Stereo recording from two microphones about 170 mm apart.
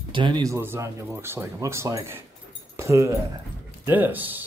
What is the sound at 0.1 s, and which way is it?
Speech, 30° right (ahead or behind).